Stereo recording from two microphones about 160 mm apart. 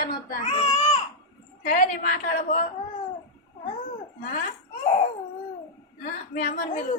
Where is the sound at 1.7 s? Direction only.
55° left (ahead or behind).